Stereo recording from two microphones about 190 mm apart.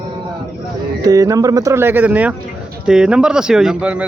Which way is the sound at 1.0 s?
20° right (ahead or behind).